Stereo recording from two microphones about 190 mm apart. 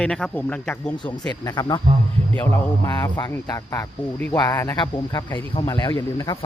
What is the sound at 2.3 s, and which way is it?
Speech, 10° left (ahead or behind).